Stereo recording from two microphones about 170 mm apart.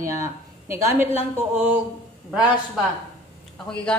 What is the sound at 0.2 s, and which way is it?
Speech, 15° right (ahead or behind).